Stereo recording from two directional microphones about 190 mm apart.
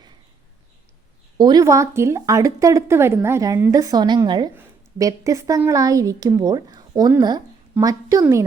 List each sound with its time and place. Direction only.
1.4 s a woman's voice: 20° right (ahead or behind)